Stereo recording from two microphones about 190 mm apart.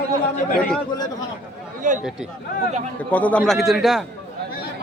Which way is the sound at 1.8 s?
40° right (ahead or behind).